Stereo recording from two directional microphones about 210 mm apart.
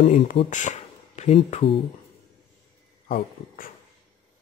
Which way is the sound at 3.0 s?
45° left (ahead or behind).